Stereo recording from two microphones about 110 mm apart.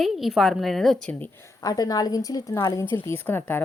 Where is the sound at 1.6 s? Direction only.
35° left (ahead or behind); by 3.6 s 20° left (ahead or behind).